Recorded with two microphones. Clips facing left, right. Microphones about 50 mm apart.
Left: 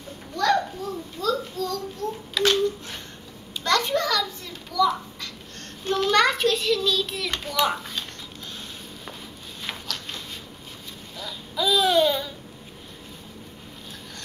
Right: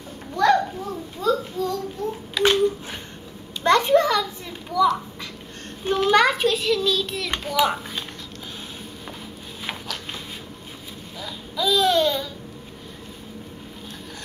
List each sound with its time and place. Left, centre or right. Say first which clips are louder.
0.3 s children playing: right 4 dB; centre
1.2 s a sound: right 3 dB; right
3.6 s children playing: right 6 dB; right
5.9 s child singing: right 2 dB; centre
7.3 s a sound: right 3 dB; centre
11.5 s babbling: right 1 dB; centre